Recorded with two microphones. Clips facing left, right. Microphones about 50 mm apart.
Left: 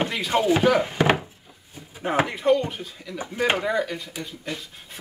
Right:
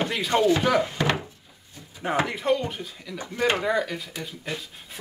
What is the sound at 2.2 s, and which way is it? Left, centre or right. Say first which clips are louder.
Speech: left 3 dB; centre.